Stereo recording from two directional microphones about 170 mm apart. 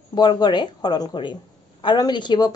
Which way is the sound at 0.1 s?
25° left (ahead or behind).